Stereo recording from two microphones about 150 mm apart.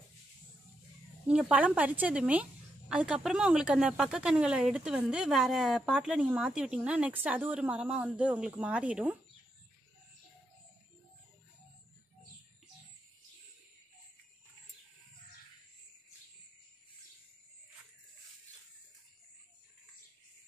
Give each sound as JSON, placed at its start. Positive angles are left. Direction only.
{"t": 1.2, "sound": "speech", "side_deg": -5}